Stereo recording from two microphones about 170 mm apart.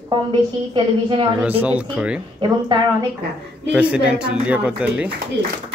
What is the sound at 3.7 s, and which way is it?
Music, 5° right (ahead or behind).